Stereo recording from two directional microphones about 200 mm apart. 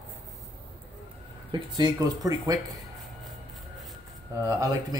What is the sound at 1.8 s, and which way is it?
Speech, 20° right (ahead or behind).